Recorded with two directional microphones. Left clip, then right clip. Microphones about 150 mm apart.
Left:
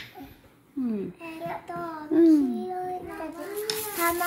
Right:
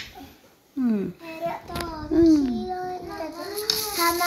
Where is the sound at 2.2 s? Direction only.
25° left (ahead or behind).